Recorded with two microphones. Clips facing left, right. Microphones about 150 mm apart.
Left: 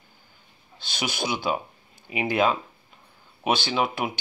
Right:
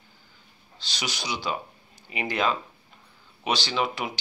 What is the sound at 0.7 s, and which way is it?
Speech, 50° left (ahead or behind).